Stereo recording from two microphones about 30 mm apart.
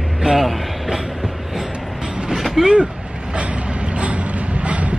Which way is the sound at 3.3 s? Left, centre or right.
Right.